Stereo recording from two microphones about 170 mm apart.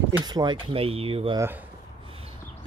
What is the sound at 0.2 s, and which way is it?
Speech, 25° right (ahead or behind).